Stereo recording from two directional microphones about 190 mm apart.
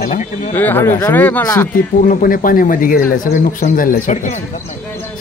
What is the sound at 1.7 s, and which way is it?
Speech, 45° left (ahead or behind).